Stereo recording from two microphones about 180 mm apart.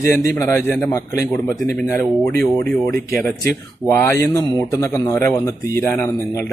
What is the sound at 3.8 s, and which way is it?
A man's voice, 15° left (ahead or behind).